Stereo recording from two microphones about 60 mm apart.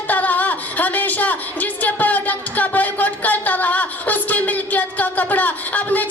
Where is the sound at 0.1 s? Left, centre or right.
Left.